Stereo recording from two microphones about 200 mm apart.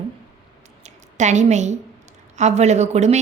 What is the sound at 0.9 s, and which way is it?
A woman's voice, 35° right (ahead or behind).